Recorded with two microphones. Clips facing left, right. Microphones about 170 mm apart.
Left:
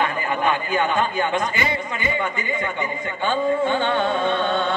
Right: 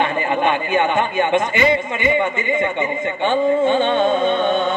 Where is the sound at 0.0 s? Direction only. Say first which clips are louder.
Right 4 dB; 25° right (ahead or behind).